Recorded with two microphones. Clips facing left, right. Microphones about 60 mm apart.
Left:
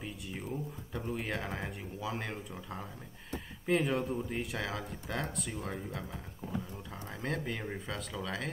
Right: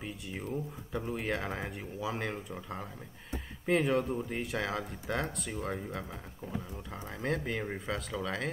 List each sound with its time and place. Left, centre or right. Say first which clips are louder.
0.0 s a sound: right 2 dB; centre
0.5 s speech: right 4 dB; centre
3.6 s speech: right 2 dB; centre
7.6 s speech: right 3 dB; centre